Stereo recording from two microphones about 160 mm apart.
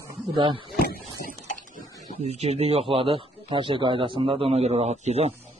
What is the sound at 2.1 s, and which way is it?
A man's voice, 40° right (ahead or behind).